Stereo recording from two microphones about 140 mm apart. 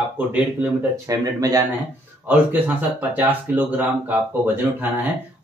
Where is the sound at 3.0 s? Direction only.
15° right (ahead or behind).